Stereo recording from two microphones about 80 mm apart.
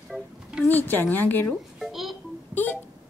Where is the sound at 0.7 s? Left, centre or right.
Left.